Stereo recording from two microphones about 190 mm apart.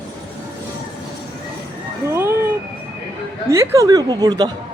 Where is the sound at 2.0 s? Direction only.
15° right (ahead or behind).